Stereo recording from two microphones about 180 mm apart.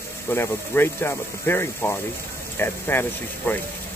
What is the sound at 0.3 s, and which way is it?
Speech, 10° left (ahead or behind).